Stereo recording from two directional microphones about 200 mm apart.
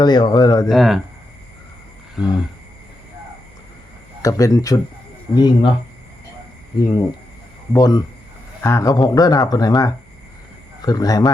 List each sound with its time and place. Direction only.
0.0 s speech: 20° left (ahead or behind)
0.7 s speech: centre (ahead or behind)
4.2 s a man's voice: 15° left (ahead or behind)
6.8 s a man's voice: 15° left (ahead or behind)